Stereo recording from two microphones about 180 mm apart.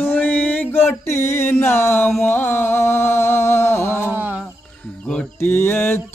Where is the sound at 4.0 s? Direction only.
10° right (ahead or behind).